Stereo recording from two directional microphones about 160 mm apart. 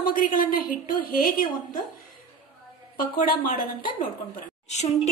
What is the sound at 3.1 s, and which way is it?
Speech, 60° left (ahead or behind).